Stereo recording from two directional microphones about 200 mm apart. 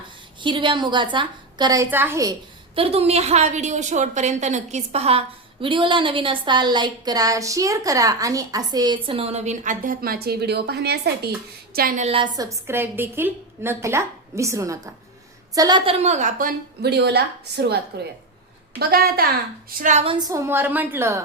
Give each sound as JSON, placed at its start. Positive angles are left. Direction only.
{"t": 0.4, "sound": "a woman's voice", "side_deg": -25}
{"t": 2.7, "sound": "a woman's voice", "side_deg": -30}
{"t": 12.0, "sound": "a woman's voice", "side_deg": -25}
{"t": 16.0, "sound": "a woman's voice", "side_deg": -35}
{"t": 18.8, "sound": "a woman's voice", "side_deg": -50}
{"t": 19.8, "sound": "a woman's voice", "side_deg": -35}
{"t": 20.1, "sound": "a woman's voice", "side_deg": -15}